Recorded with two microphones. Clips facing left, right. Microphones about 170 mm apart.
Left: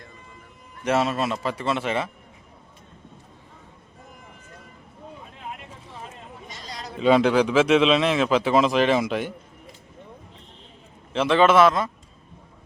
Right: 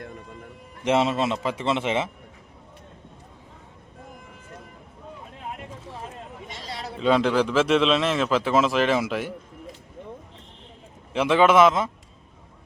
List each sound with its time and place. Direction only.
0.9 s a man's voice: 20° right (ahead or behind)
6.5 s a sound: 25° right (ahead or behind)
7.0 s a man's voice: 5° left (ahead or behind)
11.1 s speech: 10° right (ahead or behind)